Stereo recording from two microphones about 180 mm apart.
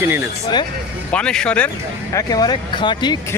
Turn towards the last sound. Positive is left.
turn(degrees=25)  # may be behind; listen again after turning